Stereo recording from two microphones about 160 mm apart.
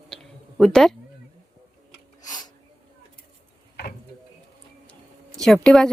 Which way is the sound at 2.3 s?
25° left (ahead or behind).